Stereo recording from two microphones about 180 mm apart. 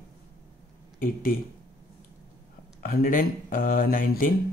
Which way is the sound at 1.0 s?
50° left (ahead or behind).